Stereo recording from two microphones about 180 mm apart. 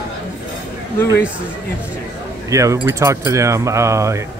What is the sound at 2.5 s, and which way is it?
Keys jangling, 15° right (ahead or behind).